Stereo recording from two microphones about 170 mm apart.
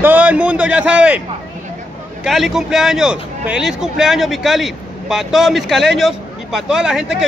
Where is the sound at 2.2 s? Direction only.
Centre (ahead or behind).